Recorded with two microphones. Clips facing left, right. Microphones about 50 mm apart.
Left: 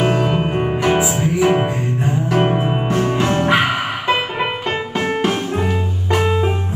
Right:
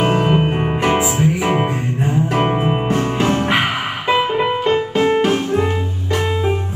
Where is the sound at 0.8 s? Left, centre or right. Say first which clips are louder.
Right 2 dB; centre.